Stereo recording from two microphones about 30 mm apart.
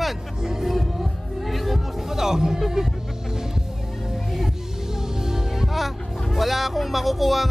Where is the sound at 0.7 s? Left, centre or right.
Centre.